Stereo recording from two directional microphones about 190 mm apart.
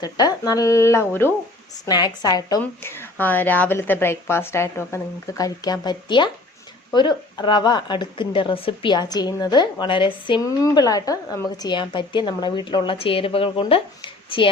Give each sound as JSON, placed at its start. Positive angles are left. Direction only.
{"t": 0.0, "sound": "a woman's voice", "side_deg": 20}